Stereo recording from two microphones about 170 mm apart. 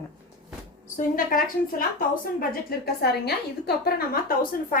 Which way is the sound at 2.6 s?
70° left (ahead or behind).